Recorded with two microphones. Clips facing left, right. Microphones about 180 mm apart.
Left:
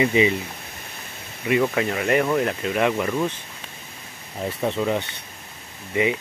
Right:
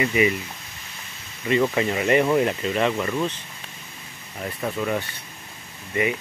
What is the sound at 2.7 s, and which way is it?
Speech, 10° left (ahead or behind).